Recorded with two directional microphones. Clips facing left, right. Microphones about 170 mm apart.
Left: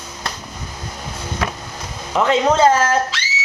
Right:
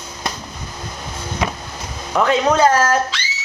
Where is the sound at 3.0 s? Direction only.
5° left (ahead or behind).